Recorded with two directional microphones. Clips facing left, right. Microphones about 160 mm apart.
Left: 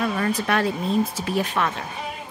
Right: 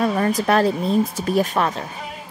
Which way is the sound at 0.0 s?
35° right (ahead or behind).